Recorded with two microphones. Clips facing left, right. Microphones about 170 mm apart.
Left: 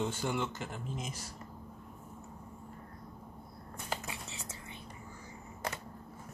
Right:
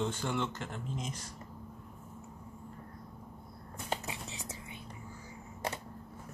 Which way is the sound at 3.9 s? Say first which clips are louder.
Right 2 dB; 20° right (ahead or behind).